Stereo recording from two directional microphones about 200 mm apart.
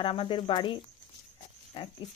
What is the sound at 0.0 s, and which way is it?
Speech, 25° left (ahead or behind).